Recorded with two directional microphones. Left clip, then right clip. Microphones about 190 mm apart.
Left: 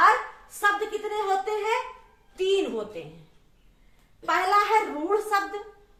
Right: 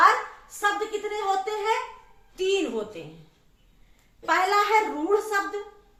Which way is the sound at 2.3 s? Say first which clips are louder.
Even; 20° right (ahead or behind).